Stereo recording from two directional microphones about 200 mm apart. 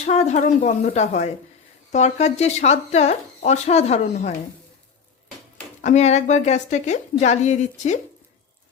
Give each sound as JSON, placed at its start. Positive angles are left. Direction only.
{"t": 0.0, "sound": "speech", "side_deg": 35}
{"t": 5.8, "sound": "speech", "side_deg": 35}